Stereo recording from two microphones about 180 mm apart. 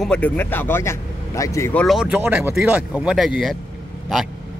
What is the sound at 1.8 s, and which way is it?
Speech, centre (ahead or behind).